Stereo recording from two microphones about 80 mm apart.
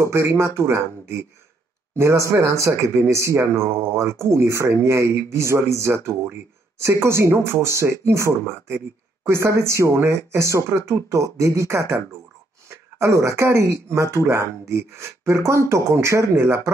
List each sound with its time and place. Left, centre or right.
0.0 s speech: right